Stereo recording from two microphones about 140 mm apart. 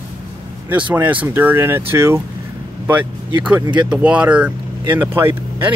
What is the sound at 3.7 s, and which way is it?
Speech, 10° right (ahead or behind).